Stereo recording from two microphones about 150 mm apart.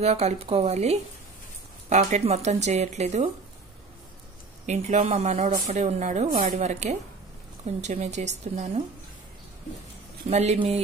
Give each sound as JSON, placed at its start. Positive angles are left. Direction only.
{"t": 0.0, "sound": "speech", "side_deg": -45}
{"t": 4.6, "sound": "speech", "side_deg": -50}
{"t": 10.3, "sound": "speech", "side_deg": -45}